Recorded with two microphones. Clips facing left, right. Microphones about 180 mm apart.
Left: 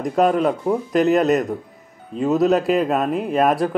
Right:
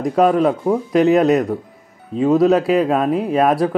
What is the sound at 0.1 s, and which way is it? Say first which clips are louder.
Speech: right 3 dB; 40° right (ahead or behind).